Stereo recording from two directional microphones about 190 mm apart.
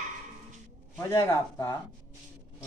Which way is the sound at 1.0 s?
15° left (ahead or behind).